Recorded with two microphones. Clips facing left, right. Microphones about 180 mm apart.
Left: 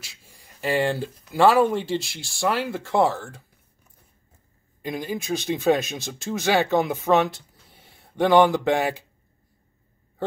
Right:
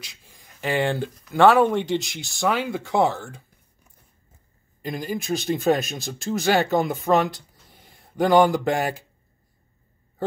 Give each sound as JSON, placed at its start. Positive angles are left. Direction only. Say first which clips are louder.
{"t": 0.0, "sound": "a sound", "louder": "right 2 dB", "side_deg": 5}
{"t": 1.3, "sound": "speech", "louder": "right 2 dB", "side_deg": 5}
{"t": 5.0, "sound": "speech", "louder": "right 2 dB", "side_deg": 0}